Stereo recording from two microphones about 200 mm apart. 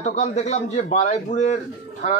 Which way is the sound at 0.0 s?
35° left (ahead or behind).